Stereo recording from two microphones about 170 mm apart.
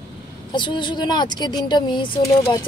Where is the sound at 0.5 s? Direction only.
30° left (ahead or behind).